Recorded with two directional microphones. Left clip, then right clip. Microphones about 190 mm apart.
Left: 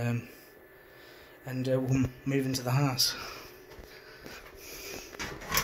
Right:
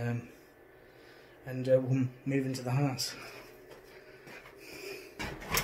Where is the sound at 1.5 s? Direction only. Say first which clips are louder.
Right 2 dB; 35° left (ahead or behind).